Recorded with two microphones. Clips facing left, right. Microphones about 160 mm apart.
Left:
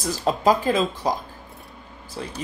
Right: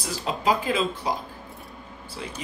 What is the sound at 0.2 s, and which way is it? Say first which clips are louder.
Speech: left 5 dB; 40° left (ahead or behind).